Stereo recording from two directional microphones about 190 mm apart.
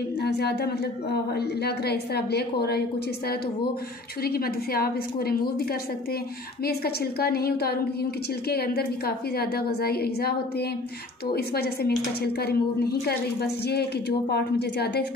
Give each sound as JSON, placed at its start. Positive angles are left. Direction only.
{"t": 0.2, "sound": "a woman's voice", "side_deg": 60}
{"t": 4.2, "sound": "a woman's voice", "side_deg": 55}
{"t": 6.6, "sound": "a woman's voice", "side_deg": 55}